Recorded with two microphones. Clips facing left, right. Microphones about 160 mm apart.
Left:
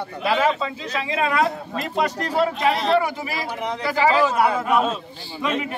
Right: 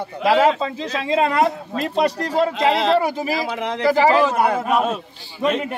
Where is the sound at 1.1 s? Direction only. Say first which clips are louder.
Right 4 dB; 25° right (ahead or behind).